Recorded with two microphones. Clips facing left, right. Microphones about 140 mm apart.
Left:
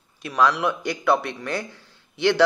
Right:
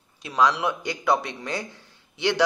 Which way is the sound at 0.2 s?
20° right (ahead or behind).